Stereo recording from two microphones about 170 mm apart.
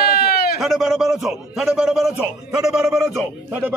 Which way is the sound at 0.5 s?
Centre (ahead or behind).